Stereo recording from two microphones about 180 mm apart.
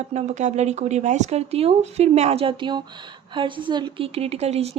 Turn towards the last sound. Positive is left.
turn(degrees=-35)  # may be behind; listen again after turning